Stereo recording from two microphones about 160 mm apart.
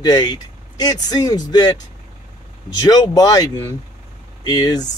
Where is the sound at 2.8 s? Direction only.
25° left (ahead or behind).